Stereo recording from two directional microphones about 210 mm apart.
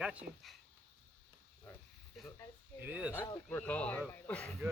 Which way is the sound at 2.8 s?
5° right (ahead or behind).